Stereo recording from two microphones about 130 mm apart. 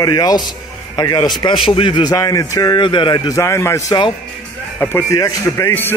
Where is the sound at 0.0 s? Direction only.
30° left (ahead or behind).